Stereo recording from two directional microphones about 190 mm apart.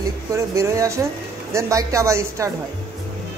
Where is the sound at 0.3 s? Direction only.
15° right (ahead or behind).